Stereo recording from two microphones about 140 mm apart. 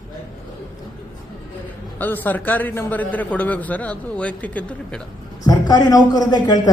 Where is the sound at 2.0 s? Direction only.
15° left (ahead or behind).